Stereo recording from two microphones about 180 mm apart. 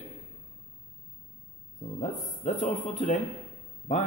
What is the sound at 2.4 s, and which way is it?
A man's voice, 40° left (ahead or behind).